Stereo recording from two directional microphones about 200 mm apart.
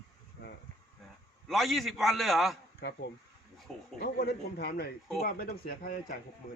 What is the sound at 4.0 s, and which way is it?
Speech, 55° left (ahead or behind).